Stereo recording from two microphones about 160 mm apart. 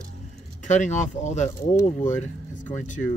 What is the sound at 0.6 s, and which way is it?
Speech, 50° left (ahead or behind).